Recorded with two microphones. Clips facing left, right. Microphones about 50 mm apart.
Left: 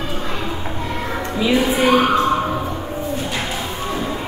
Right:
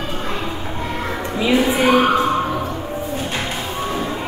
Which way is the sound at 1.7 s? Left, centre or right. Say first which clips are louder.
Left 1 dB; right.